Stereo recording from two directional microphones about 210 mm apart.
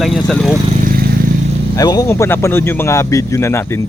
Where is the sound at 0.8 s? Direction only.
40° right (ahead or behind).